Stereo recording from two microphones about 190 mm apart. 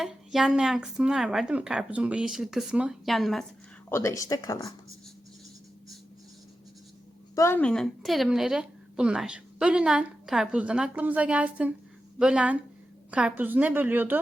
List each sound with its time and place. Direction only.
0.0 s a woman's voice: centre (ahead or behind)
3.8 s speech: 15° left (ahead or behind)
7.3 s a woman's voice: 10° left (ahead or behind); by 14.2 s 10° right (ahead or behind)